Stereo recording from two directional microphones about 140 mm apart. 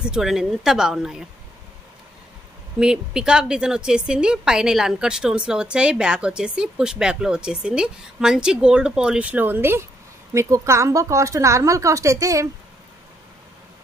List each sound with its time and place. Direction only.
0.0 s a woman's voice: 5° right (ahead or behind)
2.8 s a woman's voice: 5° right (ahead or behind); by 12.4 s 20° right (ahead or behind)